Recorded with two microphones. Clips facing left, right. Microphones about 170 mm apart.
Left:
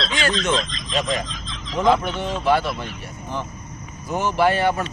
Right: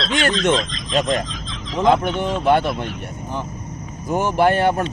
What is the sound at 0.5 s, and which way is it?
Speech, centre (ahead or behind).